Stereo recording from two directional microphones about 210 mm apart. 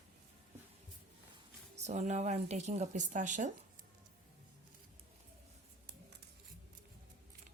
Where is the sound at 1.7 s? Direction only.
30° right (ahead or behind).